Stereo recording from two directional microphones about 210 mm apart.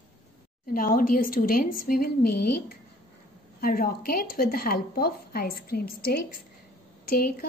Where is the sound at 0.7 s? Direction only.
40° left (ahead or behind).